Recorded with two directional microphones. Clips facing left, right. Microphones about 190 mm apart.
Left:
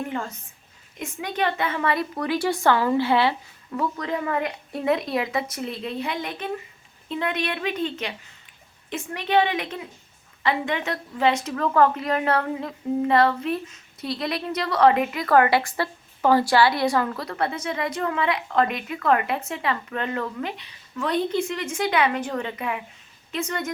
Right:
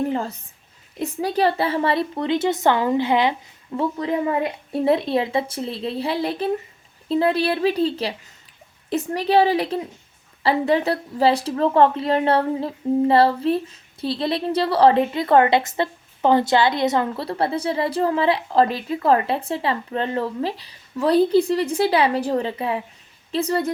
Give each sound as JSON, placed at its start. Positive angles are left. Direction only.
{"t": 0.0, "sound": "a woman's voice", "side_deg": -35}